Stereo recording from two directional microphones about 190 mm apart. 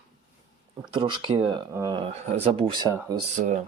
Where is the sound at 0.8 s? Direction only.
25° right (ahead or behind).